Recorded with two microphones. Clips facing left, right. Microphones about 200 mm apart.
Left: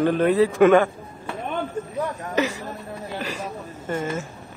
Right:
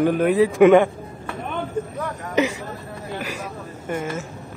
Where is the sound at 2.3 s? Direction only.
15° right (ahead or behind).